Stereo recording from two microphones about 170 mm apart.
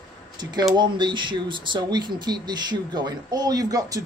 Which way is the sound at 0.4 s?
25° right (ahead or behind).